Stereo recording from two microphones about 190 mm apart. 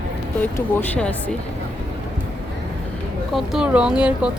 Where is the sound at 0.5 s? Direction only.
10° left (ahead or behind).